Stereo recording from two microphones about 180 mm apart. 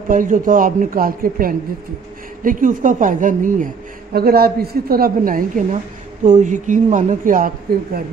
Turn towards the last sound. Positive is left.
turn(degrees=-50)  # may be behind; listen again after turning